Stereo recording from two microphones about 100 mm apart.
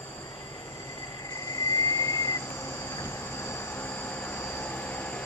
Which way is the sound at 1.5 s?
30° left (ahead or behind).